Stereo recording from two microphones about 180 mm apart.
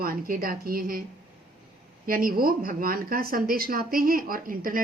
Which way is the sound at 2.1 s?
50° right (ahead or behind).